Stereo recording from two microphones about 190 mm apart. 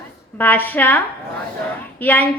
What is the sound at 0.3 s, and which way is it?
A woman's voice, 10° left (ahead or behind).